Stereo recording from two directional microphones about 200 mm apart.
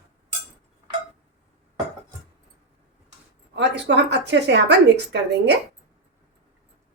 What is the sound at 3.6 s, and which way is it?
A woman's voice, 60° right (ahead or behind).